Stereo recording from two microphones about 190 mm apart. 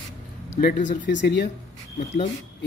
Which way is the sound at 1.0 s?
70° left (ahead or behind).